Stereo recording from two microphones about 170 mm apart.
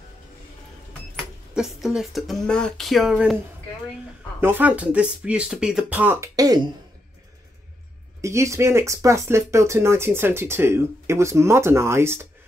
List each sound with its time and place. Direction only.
1.1 s speech: centre (ahead or behind)
4.4 s speech: 10° right (ahead or behind)
8.2 s speech: 15° right (ahead or behind)